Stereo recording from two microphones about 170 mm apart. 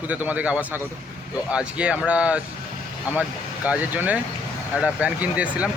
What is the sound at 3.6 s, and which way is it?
A man's voice, 10° right (ahead or behind).